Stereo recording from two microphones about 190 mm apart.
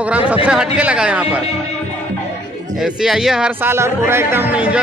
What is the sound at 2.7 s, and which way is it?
Speech, centre (ahead or behind).